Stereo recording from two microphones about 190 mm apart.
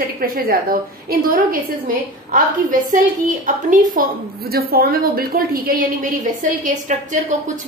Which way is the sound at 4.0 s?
45° right (ahead or behind).